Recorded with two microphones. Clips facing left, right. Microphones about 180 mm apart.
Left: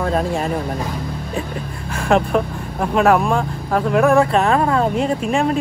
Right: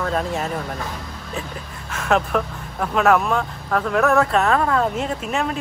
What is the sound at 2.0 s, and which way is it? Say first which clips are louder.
Speech: left 4 dB; 30° left (ahead or behind).